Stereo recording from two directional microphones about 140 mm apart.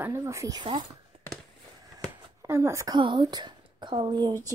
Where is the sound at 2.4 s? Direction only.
20° right (ahead or behind).